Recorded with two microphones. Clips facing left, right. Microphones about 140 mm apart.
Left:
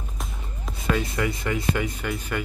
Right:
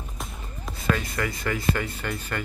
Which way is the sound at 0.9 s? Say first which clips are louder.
Left 3 dB; 20° left (ahead or behind).